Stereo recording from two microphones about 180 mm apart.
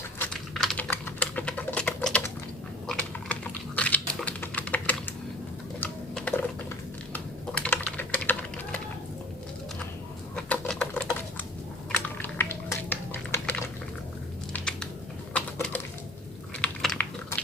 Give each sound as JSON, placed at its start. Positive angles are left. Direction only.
{"t": 0.2, "sound": "typing", "side_deg": 0}
{"t": 10.3, "sound": "typing", "side_deg": 5}
{"t": 11.9, "sound": "a sound", "side_deg": 10}
{"t": 14.5, "sound": "typing", "side_deg": 5}